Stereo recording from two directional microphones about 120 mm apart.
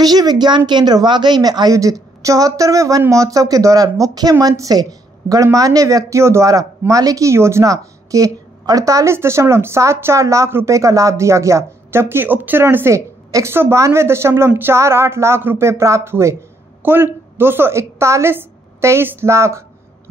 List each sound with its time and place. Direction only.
0.0 s a woman's voice: 35° right (ahead or behind)